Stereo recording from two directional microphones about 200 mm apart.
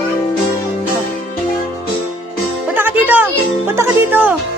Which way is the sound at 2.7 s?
10° right (ahead or behind).